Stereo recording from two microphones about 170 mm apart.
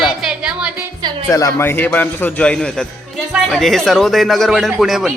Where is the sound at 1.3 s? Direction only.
20° left (ahead or behind).